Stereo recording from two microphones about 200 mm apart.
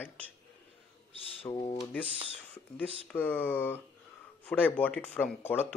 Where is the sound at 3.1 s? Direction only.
10° left (ahead or behind).